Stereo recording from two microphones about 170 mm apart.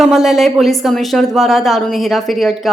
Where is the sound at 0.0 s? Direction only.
Centre (ahead or behind).